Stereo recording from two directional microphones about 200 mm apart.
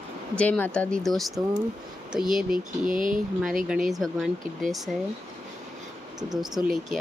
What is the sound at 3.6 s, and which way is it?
Speech, 5° right (ahead or behind).